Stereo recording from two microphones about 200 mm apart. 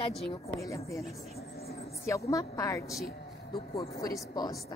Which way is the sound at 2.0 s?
15° left (ahead or behind).